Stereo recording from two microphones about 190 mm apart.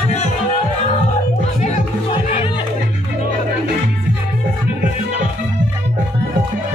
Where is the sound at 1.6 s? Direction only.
30° left (ahead or behind).